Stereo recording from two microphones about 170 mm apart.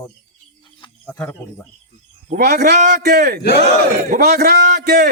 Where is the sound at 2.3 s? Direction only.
70° right (ahead or behind).